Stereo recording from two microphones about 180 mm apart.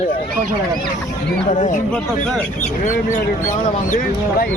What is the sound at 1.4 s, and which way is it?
Speech, 45° left (ahead or behind).